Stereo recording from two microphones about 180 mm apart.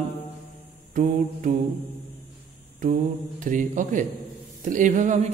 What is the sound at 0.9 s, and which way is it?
Mantra, 45° right (ahead or behind).